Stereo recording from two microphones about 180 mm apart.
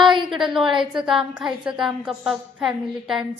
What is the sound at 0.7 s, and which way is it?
Speech, 25° right (ahead or behind).